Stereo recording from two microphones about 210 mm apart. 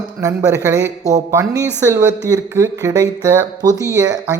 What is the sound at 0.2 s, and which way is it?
A woman's voice, 15° right (ahead or behind).